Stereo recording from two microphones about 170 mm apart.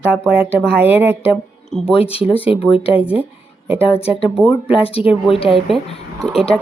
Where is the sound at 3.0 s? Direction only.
5° right (ahead or behind).